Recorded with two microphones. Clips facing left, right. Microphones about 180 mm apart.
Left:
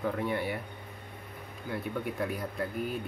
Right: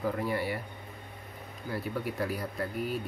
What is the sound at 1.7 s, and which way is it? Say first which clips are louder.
Speech: even; 5° right (ahead or behind).